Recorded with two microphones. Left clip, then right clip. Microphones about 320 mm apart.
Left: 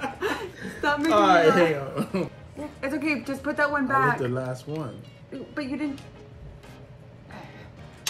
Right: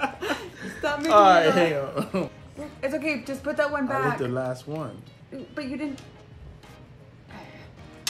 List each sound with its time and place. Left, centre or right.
0.2 s chuckle: centre
1.1 s speech: centre
2.8 s speech: centre